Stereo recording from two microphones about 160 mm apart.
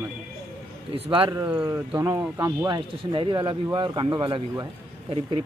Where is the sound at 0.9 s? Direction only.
35° right (ahead or behind).